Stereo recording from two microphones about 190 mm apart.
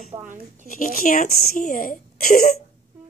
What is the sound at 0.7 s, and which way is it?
Speech, 45° left (ahead or behind).